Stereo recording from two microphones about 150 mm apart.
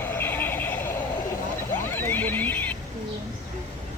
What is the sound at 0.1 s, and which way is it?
Vehicle, 15° left (ahead or behind).